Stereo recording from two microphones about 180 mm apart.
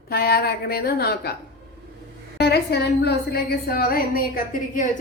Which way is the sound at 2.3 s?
65° left (ahead or behind).